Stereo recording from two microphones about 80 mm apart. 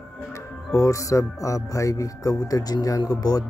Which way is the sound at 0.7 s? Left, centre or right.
Left.